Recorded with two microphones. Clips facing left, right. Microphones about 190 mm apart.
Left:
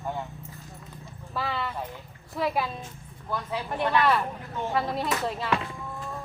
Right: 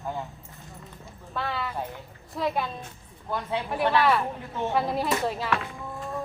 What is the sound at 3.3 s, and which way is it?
Speech, 30° right (ahead or behind).